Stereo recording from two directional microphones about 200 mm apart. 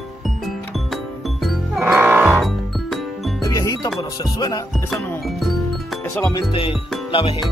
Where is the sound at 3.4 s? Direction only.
15° left (ahead or behind).